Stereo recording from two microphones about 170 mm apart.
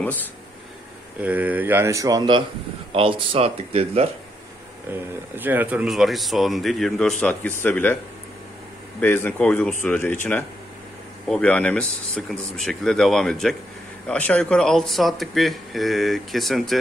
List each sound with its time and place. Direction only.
0.0 s speech: 10° left (ahead or behind)
1.2 s speech: 10° right (ahead or behind); by 4.1 s 35° right (ahead or behind)
5.3 s speech: 10° right (ahead or behind); by 8.0 s 10° left (ahead or behind)
9.0 s speech: 10° left (ahead or behind)
11.2 s speech: 5° left (ahead or behind)